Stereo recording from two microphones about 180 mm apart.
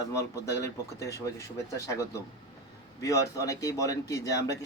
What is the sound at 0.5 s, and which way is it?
Speech, 15° left (ahead or behind).